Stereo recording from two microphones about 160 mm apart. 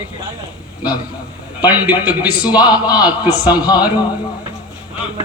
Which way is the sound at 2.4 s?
25° left (ahead or behind).